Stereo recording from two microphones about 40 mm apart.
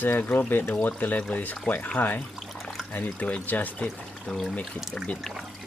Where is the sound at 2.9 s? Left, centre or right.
Left.